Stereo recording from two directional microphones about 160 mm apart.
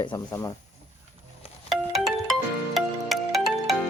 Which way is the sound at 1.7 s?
Centre (ahead or behind).